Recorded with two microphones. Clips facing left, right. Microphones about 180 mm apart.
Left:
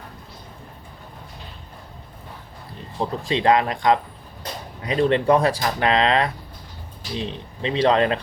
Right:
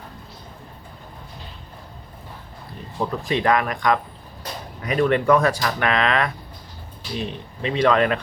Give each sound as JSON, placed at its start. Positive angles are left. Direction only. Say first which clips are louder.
{"t": 3.0, "sound": "speech", "louder": "even", "side_deg": 25}